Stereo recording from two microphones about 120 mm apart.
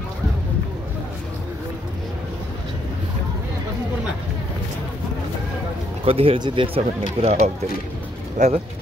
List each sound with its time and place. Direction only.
6.0 s speech: 50° right (ahead or behind)
7.2 s speech: 60° right (ahead or behind)
8.4 s speech: 90° right